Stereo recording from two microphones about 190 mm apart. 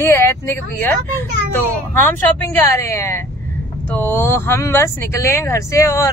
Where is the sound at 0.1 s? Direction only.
15° left (ahead or behind).